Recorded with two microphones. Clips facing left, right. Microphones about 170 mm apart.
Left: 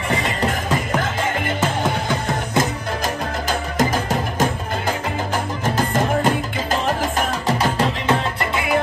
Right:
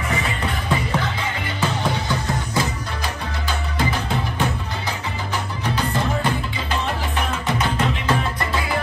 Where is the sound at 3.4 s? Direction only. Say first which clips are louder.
Left 4 dB; 40° left (ahead or behind).